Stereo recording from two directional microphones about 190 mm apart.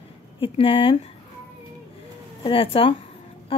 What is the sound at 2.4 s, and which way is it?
Speech, 30° left (ahead or behind).